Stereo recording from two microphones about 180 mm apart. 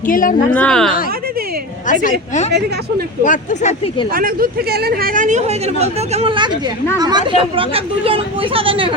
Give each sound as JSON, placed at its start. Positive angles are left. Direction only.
{"t": 0.1, "sound": "speech", "side_deg": 50}
{"t": 0.5, "sound": "a woman's voice", "side_deg": 5}
{"t": 1.9, "sound": "speech", "side_deg": 45}
{"t": 4.1, "sound": "speech", "side_deg": -55}